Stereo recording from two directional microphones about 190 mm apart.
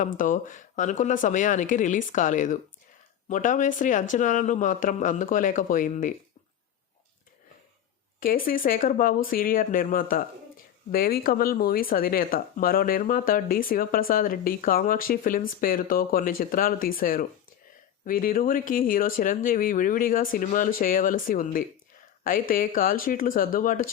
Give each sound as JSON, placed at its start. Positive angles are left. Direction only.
{"t": 0.0, "sound": "speech", "side_deg": 45}
{"t": 8.2, "sound": "speech", "side_deg": 45}